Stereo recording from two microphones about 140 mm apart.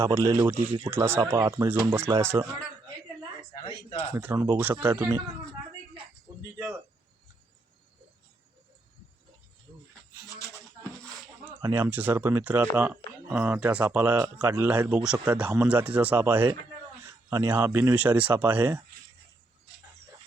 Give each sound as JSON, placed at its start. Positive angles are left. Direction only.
{"t": 0.0, "sound": "speech", "side_deg": -20}
{"t": 3.5, "sound": "speech", "side_deg": 35}
{"t": 4.1, "sound": "speech", "side_deg": -15}
{"t": 11.7, "sound": "speech", "side_deg": -15}
{"t": 17.0, "sound": "a sound", "side_deg": -20}
{"t": 17.5, "sound": "speech", "side_deg": -15}